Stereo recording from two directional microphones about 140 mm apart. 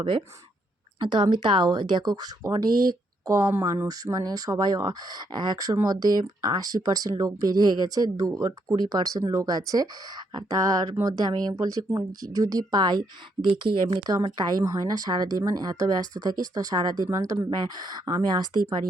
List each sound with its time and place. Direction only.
0.9 s a woman's voice: 35° right (ahead or behind)
11.0 s speech: 30° right (ahead or behind)